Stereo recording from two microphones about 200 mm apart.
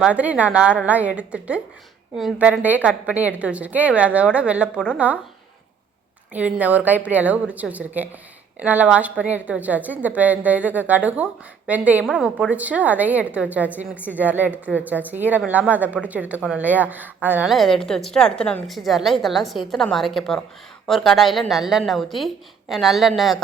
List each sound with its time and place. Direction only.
0.0 s a woman's voice: 5° right (ahead or behind)
6.3 s a woman's voice: 10° right (ahead or behind)